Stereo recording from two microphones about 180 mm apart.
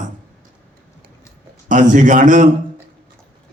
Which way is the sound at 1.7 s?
45° right (ahead or behind).